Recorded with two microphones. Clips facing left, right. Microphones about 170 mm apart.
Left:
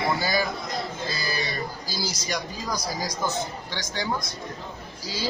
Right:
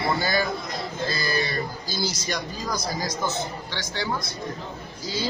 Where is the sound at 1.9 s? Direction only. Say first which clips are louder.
Right 2 dB; 10° left (ahead or behind).